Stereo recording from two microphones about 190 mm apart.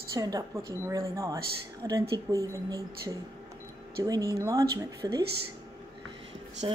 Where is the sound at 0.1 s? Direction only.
20° right (ahead or behind).